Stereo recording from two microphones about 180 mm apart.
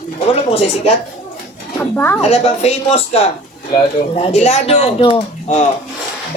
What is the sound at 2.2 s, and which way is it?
Speech, 35° left (ahead or behind).